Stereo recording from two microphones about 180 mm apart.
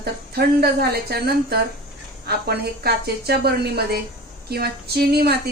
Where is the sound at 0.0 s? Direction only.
60° right (ahead or behind).